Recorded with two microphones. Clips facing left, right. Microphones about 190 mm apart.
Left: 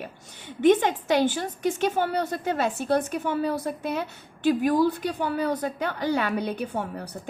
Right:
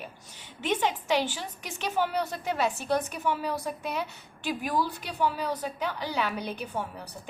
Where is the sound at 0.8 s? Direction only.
50° left (ahead or behind).